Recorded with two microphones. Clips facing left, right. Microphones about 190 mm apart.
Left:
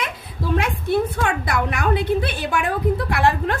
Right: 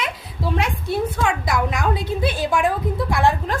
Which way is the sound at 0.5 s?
55° left (ahead or behind).